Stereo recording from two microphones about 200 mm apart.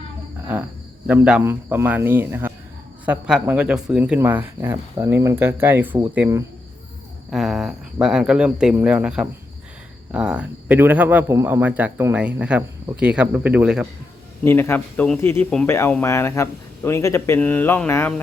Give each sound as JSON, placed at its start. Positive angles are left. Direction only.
{"t": 1.0, "sound": "speech", "side_deg": -5}
{"t": 7.3, "sound": "speech", "side_deg": 0}
{"t": 14.4, "sound": "speech", "side_deg": 10}